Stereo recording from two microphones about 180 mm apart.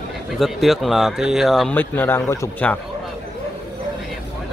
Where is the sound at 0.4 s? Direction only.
Centre (ahead or behind).